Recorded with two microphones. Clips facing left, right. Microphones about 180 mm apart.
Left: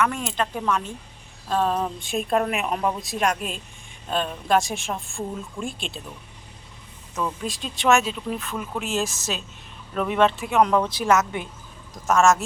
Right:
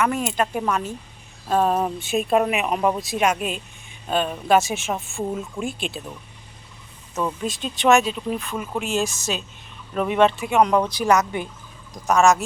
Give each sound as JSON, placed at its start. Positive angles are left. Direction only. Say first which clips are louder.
{"t": 0.0, "sound": "speech", "louder": "right 3 dB", "side_deg": -5}
{"t": 7.4, "sound": "speech", "louder": "right 3 dB", "side_deg": 0}